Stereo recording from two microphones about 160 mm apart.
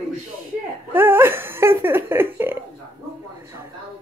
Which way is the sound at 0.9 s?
15° right (ahead or behind).